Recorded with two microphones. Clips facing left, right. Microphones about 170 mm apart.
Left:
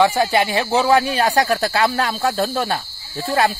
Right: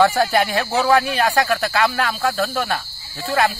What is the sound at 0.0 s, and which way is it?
Speech, 20° left (ahead or behind).